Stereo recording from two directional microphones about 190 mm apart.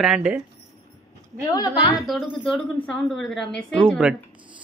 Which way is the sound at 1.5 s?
20° left (ahead or behind).